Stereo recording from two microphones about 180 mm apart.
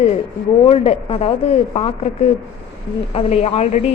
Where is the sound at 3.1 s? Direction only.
35° left (ahead or behind).